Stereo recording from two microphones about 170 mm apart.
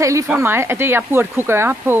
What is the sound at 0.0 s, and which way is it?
A woman's voice, 20° right (ahead or behind).